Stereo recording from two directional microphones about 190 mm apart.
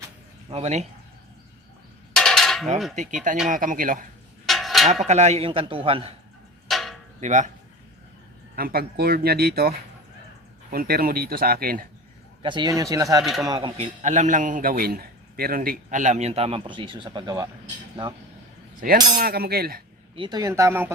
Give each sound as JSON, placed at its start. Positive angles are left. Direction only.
{"t": 0.5, "sound": "a man's voice", "side_deg": -35}
{"t": 2.1, "sound": "dishes", "side_deg": 5}
{"t": 2.9, "sound": "a man's voice", "side_deg": -40}
{"t": 4.4, "sound": "a sound", "side_deg": 0}
{"t": 5.0, "sound": "a man's voice", "side_deg": -35}
{"t": 6.7, "sound": "a sound", "side_deg": 0}
{"t": 7.2, "sound": "a man's voice", "side_deg": -40}
{"t": 8.5, "sound": "speech", "side_deg": -50}
{"t": 12.4, "sound": "a man's voice", "side_deg": -25}
{"t": 18.8, "sound": "speech", "side_deg": -45}
{"t": 20.1, "sound": "speech", "side_deg": -25}